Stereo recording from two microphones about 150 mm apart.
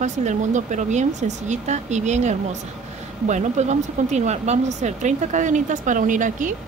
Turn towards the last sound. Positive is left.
turn(degrees=-60)  # may be behind; listen again after turning